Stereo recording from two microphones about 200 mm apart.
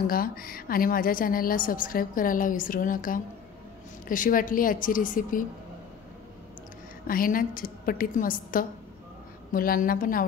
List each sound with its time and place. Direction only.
0.0 s a woman's voice: 45° left (ahead or behind)
7.1 s a woman's voice: 45° left (ahead or behind)